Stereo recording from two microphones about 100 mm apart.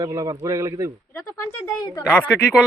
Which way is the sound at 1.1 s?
30° left (ahead or behind).